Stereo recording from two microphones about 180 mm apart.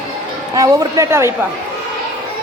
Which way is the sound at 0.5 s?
20° right (ahead or behind).